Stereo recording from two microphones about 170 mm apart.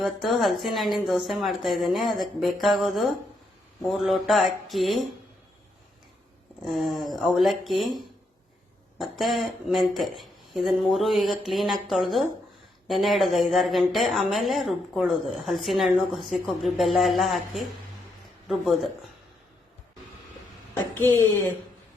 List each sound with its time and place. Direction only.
0.0 s speech: centre (ahead or behind)
6.7 s speech: centre (ahead or behind)
21.0 s speech: 15° left (ahead or behind)